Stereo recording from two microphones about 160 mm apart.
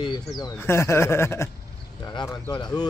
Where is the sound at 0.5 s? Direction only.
15° left (ahead or behind).